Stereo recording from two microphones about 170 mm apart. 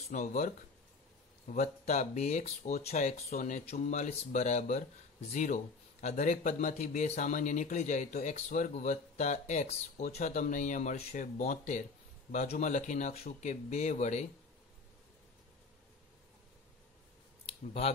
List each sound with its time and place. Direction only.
0.1 s speech: 45° left (ahead or behind)
17.5 s speech: 35° left (ahead or behind)